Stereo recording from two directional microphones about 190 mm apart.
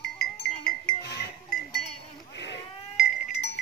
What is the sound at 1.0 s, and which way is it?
Livestock, 60° left (ahead or behind).